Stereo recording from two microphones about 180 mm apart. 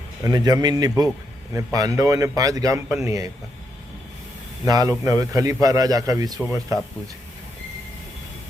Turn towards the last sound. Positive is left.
turn(degrees=-20)  # may be behind; listen again after turning